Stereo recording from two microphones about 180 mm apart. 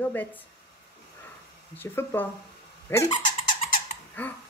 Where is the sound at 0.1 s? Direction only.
10° left (ahead or behind).